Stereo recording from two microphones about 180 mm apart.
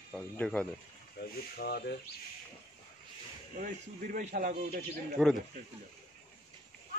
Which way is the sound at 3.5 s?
50° right (ahead or behind).